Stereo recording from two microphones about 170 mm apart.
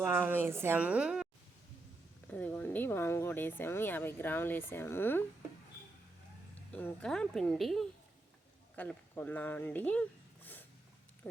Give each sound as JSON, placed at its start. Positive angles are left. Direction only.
{"t": 0.0, "sound": "a woman's voice", "side_deg": -10}
{"t": 2.3, "sound": "speech", "side_deg": 10}
{"t": 6.7, "sound": "a woman's voice", "side_deg": 5}